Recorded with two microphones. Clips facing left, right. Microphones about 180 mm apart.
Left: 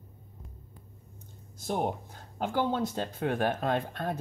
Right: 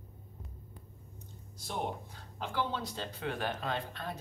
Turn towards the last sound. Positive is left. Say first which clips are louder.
# left 7 dB
turn(degrees=50)  # may be behind; listen again after turning